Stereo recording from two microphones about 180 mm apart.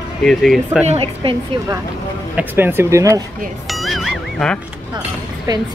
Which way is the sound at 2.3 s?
10° right (ahead or behind).